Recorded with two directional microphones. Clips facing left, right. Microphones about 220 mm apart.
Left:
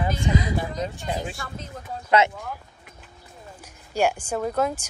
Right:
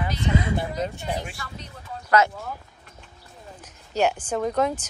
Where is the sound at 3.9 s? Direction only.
10° left (ahead or behind).